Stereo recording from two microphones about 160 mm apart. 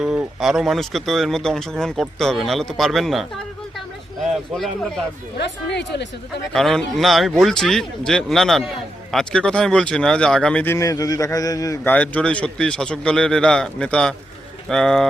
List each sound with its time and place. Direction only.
0.0 s speech: centre (ahead or behind)
5.4 s speech: 90° left
6.5 s speech: centre (ahead or behind); by 11.8 s 20° left (ahead or behind)
11.8 s speech: 10° left (ahead or behind)